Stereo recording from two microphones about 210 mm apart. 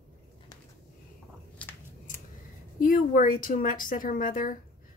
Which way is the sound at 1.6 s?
5° left (ahead or behind).